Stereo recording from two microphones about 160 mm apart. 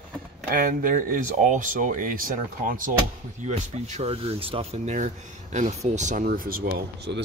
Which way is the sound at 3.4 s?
50° right (ahead or behind).